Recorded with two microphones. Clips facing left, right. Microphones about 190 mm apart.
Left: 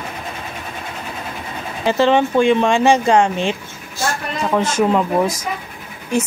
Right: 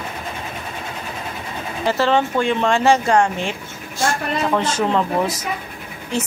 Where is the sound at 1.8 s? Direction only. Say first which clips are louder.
Left 3 dB; 15° left (ahead or behind).